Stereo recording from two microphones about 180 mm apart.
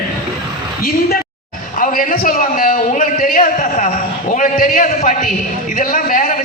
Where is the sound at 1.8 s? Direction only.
50° left (ahead or behind).